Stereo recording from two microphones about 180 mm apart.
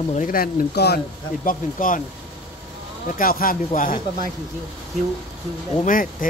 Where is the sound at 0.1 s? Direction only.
45° left (ahead or behind).